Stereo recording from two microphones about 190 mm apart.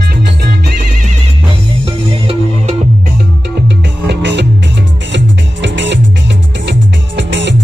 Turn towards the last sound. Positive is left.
turn(degrees=-70)  # may be behind; listen again after turning